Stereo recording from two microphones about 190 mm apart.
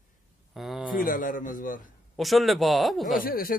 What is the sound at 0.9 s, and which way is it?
Speech, 45° left (ahead or behind).